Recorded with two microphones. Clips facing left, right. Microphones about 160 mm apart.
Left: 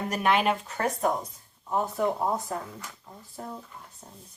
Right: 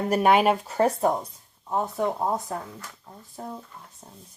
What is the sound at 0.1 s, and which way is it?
Speech, 45° right (ahead or behind).